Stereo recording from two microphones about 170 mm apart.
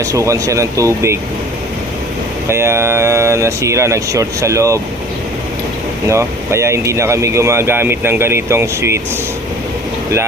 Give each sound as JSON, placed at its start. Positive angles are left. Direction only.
{"t": 0.0, "sound": "speech", "side_deg": -20}
{"t": 2.5, "sound": "speech", "side_deg": -15}
{"t": 6.1, "sound": "speech", "side_deg": -15}